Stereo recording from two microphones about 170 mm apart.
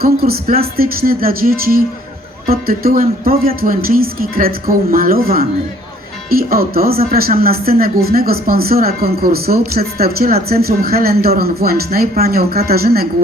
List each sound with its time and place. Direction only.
0.0 s speech: 60° right (ahead or behind)